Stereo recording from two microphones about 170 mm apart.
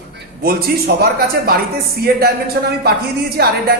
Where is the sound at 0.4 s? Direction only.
65° right (ahead or behind).